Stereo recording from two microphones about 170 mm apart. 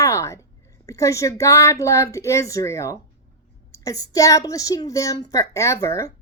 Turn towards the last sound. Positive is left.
turn(degrees=20)  # may be behind; listen again after turning